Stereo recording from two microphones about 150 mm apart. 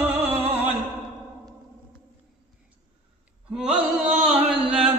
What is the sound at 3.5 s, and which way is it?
Carnatic music, 5° right (ahead or behind).